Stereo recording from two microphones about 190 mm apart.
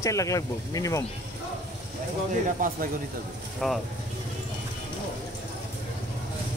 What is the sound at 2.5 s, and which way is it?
Speech, 45° right (ahead or behind).